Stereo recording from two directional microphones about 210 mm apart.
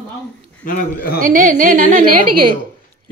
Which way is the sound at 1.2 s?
40° right (ahead or behind).